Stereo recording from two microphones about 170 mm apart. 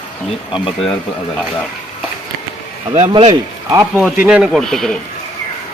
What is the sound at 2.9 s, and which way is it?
Speech, 35° right (ahead or behind).